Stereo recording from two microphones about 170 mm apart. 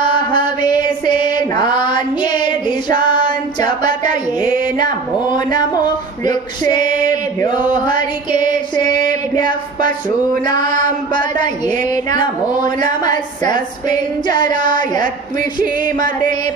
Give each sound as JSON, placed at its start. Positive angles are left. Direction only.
{"t": 0.0, "sound": "mantra", "side_deg": 30}
{"t": 4.1, "sound": "male singing", "side_deg": 30}
{"t": 11.9, "sound": "male singing", "side_deg": 25}
{"t": 14.3, "sound": "male singing", "side_deg": 25}